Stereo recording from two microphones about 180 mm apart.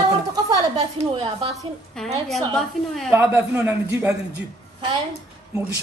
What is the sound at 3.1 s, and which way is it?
A man's voice, 10° right (ahead or behind).